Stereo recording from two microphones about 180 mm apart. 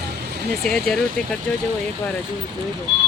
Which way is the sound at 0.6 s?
Centre (ahead or behind).